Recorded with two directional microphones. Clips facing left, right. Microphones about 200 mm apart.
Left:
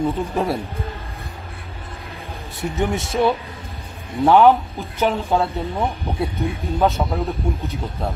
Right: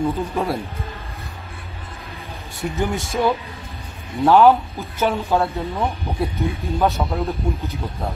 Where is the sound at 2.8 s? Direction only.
25° left (ahead or behind).